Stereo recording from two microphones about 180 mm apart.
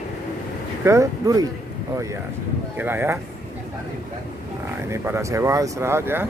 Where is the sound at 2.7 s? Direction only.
10° right (ahead or behind).